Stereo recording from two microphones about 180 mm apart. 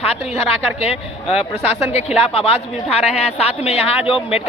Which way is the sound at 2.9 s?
5° right (ahead or behind).